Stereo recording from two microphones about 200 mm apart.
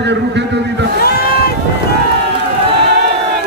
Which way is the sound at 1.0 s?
50° left (ahead or behind).